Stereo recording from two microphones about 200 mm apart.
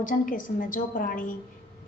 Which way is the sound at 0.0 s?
40° left (ahead or behind).